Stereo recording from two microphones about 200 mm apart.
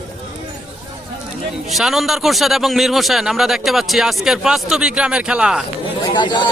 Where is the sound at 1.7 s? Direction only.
Centre (ahead or behind).